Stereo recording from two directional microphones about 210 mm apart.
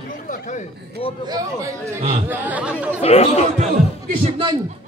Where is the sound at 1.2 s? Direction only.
15° right (ahead or behind).